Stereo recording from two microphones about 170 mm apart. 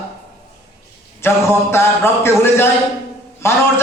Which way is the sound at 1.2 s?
15° left (ahead or behind).